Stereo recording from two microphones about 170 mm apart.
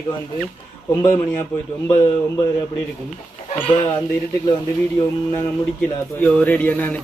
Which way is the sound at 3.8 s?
25° left (ahead or behind).